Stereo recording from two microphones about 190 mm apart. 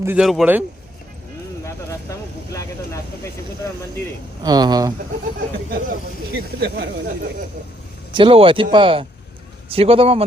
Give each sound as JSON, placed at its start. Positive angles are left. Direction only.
{"t": 0.0, "sound": "speech", "side_deg": -10}
{"t": 1.6, "sound": "vehicle", "side_deg": 15}
{"t": 4.4, "sound": "speech", "side_deg": -20}
{"t": 5.7, "sound": "speech", "side_deg": -50}
{"t": 8.1, "sound": "a man's voice", "side_deg": -25}